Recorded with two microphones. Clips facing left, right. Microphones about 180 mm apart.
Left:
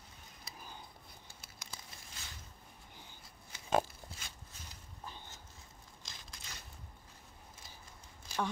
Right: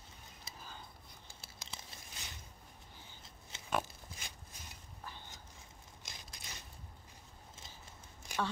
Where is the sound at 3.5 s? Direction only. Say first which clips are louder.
Right 1 dB; 25° right (ahead or behind).